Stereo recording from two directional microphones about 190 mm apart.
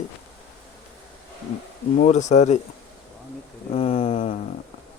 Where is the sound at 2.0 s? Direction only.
40° left (ahead or behind).